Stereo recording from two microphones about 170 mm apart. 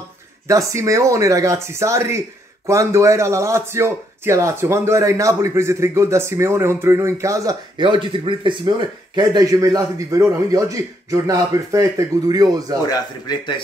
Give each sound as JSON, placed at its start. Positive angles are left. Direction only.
{"t": 0.5, "sound": "speech", "side_deg": -20}
{"t": 12.9, "sound": "speech", "side_deg": 25}